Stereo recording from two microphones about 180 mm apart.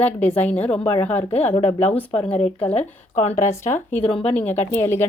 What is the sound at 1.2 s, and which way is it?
Speech, 35° left (ahead or behind).